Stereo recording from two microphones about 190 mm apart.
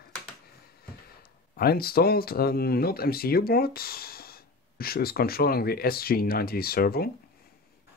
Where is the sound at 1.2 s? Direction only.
55° left (ahead or behind).